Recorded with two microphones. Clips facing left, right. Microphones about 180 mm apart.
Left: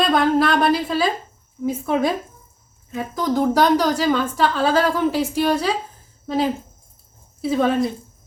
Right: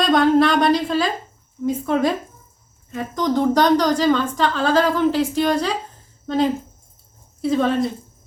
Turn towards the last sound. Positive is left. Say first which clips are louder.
# even
turn(degrees=5)  # may be behind; listen again after turning